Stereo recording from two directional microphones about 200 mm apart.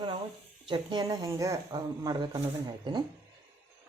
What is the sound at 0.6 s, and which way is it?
Speech, 25° right (ahead or behind).